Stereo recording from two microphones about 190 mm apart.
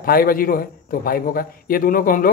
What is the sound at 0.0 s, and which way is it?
Speech, 50° left (ahead or behind).